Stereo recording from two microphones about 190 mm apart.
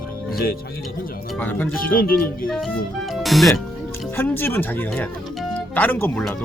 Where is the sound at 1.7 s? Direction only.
50° left (ahead or behind).